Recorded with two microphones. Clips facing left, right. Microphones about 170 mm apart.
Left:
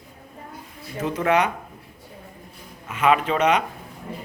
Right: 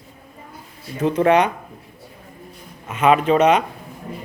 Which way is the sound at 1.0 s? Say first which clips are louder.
Right 7 dB; 30° right (ahead or behind).